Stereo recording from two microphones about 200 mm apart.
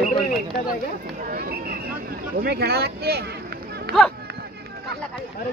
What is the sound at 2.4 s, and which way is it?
Speech, 50° right (ahead or behind).